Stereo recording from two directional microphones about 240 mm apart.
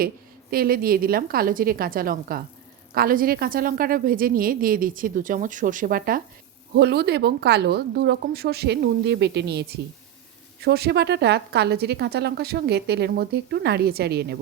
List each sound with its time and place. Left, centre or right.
0.5 s a woman's voice: right